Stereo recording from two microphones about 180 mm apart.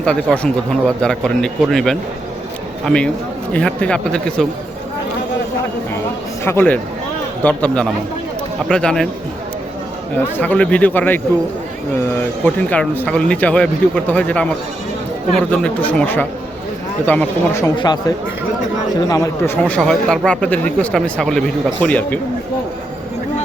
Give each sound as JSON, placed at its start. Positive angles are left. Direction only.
{"t": 0.0, "sound": "a man's voice", "side_deg": 5}
{"t": 6.4, "sound": "a man's voice", "side_deg": 15}
{"t": 10.2, "sound": "speech", "side_deg": 10}
{"t": 12.7, "sound": "speech", "side_deg": 10}
{"t": 17.7, "sound": "speech", "side_deg": 25}